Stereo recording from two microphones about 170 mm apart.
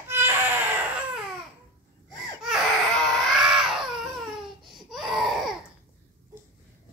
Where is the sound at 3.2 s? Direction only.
Centre (ahead or behind).